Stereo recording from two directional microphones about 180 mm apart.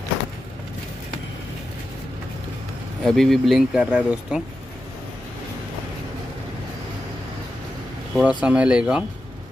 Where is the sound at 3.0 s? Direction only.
Centre (ahead or behind).